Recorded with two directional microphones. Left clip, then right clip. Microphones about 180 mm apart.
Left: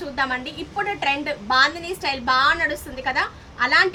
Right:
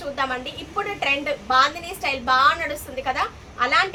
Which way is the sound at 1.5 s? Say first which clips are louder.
Left 1 dB; 20° right (ahead or behind).